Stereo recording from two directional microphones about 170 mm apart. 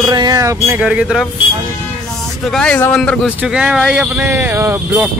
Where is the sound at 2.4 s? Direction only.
5° left (ahead or behind).